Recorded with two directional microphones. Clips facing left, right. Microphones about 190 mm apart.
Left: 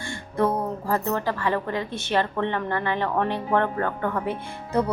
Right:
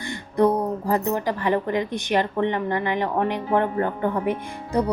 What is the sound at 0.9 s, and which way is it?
A woman's voice, 15° right (ahead or behind).